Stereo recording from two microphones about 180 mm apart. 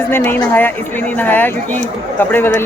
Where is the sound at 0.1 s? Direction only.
10° left (ahead or behind).